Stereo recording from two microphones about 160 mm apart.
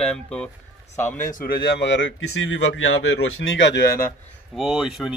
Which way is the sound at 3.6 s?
90° left.